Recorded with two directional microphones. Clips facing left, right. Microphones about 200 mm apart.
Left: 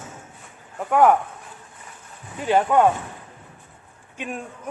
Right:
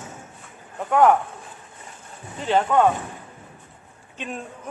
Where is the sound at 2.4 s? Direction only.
10° left (ahead or behind).